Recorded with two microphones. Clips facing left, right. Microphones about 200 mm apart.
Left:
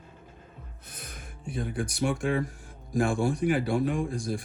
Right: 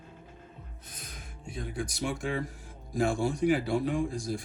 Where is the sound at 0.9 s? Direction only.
55° left (ahead or behind).